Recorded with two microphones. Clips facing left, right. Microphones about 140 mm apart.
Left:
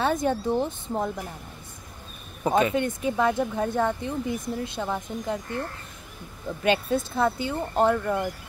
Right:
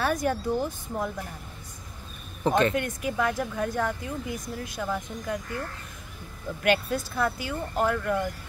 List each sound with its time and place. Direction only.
0.0 s speech: 25° left (ahead or behind)
2.4 s speech: 10° left (ahead or behind)
2.7 s speech: 25° left (ahead or behind)
6.6 s speech: 25° left (ahead or behind)